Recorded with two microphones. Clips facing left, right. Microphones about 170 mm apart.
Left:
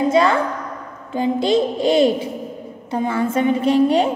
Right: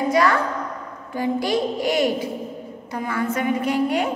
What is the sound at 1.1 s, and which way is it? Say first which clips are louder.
A woman's voice: left 5 dB; 25° left (ahead or behind).